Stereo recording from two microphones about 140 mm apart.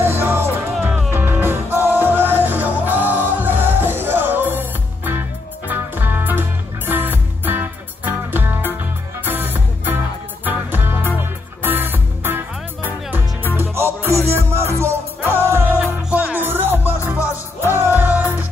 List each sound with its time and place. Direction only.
0.0 s music: 15° right (ahead or behind)